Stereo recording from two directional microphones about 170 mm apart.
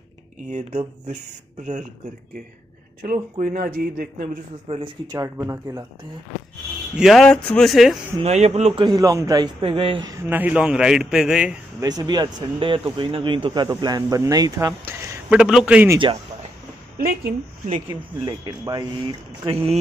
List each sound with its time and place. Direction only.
0.5 s a man's voice: 45° right (ahead or behind)
3.0 s a man's voice: 55° right (ahead or behind); by 5.9 s 15° right (ahead or behind)
7.0 s a man's voice: centre (ahead or behind)
8.2 s a man's voice: 40° right (ahead or behind)
8.8 s speech: 20° right (ahead or behind)
10.2 s a man's voice: 10° right (ahead or behind)
11.8 s speech: 20° right (ahead or behind)
17.8 s speech: 25° right (ahead or behind)
19.4 s a man's voice: 35° right (ahead or behind)